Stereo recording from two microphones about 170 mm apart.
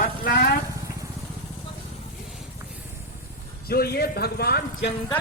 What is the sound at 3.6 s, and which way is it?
Speech, 65° left (ahead or behind).